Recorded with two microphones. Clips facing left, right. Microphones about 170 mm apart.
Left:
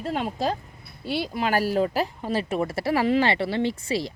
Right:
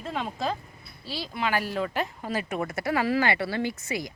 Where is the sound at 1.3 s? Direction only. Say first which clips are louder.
Left 4 dB; 40° left (ahead or behind).